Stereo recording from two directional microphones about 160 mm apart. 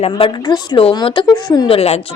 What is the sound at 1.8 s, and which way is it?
Speech, 40° left (ahead or behind).